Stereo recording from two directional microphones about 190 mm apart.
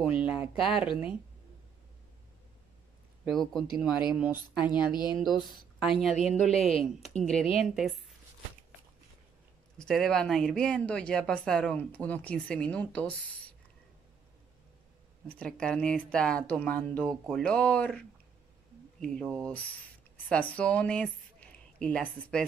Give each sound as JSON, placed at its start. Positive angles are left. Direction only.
{"t": 0.0, "sound": "speech", "side_deg": -5}
{"t": 3.3, "sound": "speech", "side_deg": 0}
{"t": 4.7, "sound": "speech", "side_deg": 20}
{"t": 5.1, "sound": "a woman's voice", "side_deg": 0}
{"t": 6.1, "sound": "a woman's voice", "side_deg": 35}
{"t": 7.2, "sound": "speech", "side_deg": 5}
{"t": 9.8, "sound": "speech", "side_deg": 5}
{"t": 15.2, "sound": "a woman's voice", "side_deg": 5}